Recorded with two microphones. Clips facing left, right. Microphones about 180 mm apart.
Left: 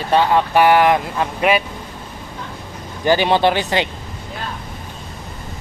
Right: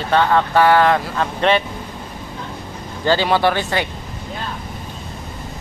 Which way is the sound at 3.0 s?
15° left (ahead or behind).